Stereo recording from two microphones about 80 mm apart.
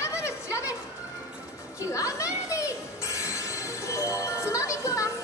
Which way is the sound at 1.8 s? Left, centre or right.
Left.